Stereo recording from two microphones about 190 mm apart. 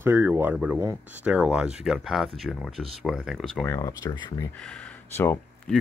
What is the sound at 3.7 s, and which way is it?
Speech, 15° left (ahead or behind).